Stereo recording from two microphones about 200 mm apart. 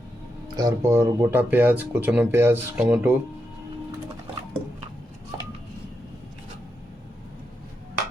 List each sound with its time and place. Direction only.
0.5 s speech: 15° right (ahead or behind)